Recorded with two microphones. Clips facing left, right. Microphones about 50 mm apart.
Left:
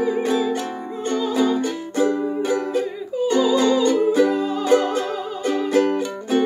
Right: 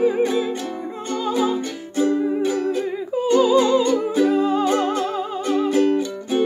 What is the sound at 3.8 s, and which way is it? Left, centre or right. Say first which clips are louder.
Music: left 2 dB; centre.